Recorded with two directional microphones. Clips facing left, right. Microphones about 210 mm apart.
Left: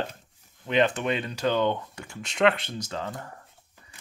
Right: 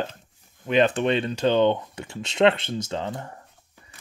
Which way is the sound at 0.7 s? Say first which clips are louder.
Right 4 dB; 25° right (ahead or behind).